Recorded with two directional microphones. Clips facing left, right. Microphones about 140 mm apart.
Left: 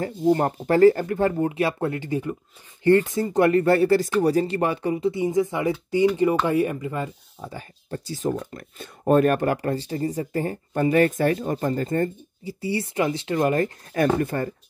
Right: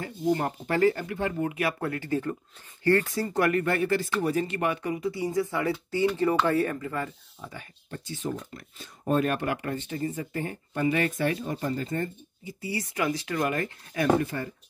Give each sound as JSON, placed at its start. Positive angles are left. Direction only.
{"t": 0.0, "sound": "speech", "side_deg": 40}
{"t": 1.5, "sound": "speech", "side_deg": 25}
{"t": 7.4, "sound": "speech", "side_deg": 35}
{"t": 8.4, "sound": "speech", "side_deg": 55}
{"t": 12.4, "sound": "speech", "side_deg": 30}
{"t": 13.9, "sound": "speech", "side_deg": 50}